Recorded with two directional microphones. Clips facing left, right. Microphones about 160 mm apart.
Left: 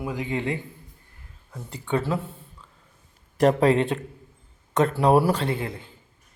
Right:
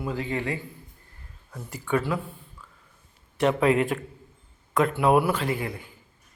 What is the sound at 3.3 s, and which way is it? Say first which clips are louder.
Speech: left 3 dB; 40° left (ahead or behind).